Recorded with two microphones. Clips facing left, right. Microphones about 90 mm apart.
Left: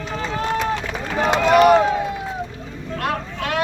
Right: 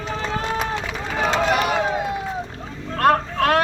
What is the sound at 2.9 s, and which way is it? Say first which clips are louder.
Vehicle: right 7 dB; 45° right (ahead or behind).